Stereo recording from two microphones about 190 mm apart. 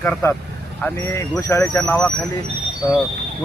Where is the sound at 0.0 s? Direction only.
10° left (ahead or behind).